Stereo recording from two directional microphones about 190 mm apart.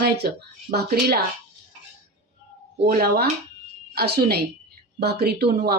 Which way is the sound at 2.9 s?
55° right (ahead or behind).